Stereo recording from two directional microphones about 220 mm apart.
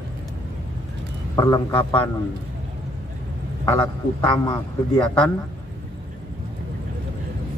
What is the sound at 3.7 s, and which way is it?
Speech, 20° left (ahead or behind).